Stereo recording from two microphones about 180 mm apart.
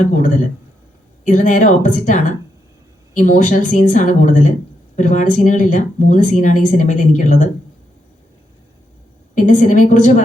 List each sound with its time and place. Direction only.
0.1 s a woman's voice: 45° left (ahead or behind)
9.3 s a woman's voice: 45° left (ahead or behind)